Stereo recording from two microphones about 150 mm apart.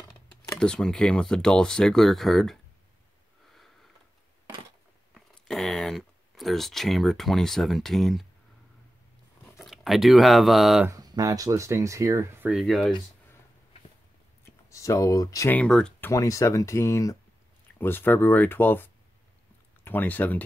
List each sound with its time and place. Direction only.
0.6 s speech: 5° left (ahead or behind)
5.1 s a sound: 5° left (ahead or behind)
9.6 s speech: centre (ahead or behind)
10.9 s speech: 25° right (ahead or behind)
12.5 s speech: centre (ahead or behind)
14.7 s speech: 20° left (ahead or behind)
15.5 s speech: 5° left (ahead or behind)
16.1 s speech: 20° left (ahead or behind)